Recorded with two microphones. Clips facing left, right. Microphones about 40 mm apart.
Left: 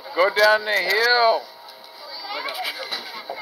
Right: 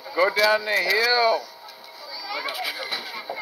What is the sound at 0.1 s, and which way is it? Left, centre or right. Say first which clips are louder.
Speech: left 3 dB; centre.